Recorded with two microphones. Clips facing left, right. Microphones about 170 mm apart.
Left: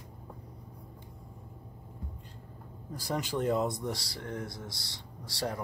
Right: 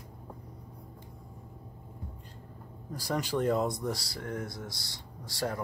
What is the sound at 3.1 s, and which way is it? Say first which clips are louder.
Speech: right 1 dB; 20° left (ahead or behind).